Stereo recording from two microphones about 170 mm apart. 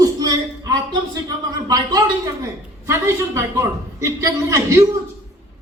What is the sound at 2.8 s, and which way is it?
A man's voice, 15° right (ahead or behind).